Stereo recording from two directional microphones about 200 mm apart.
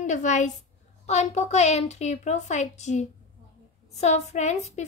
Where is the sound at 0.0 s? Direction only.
35° left (ahead or behind).